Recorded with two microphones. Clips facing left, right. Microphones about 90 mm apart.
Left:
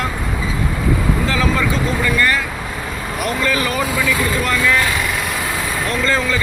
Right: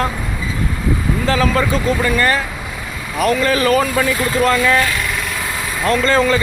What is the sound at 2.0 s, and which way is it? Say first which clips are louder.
Speech: left 1 dB; 30° right (ahead or behind).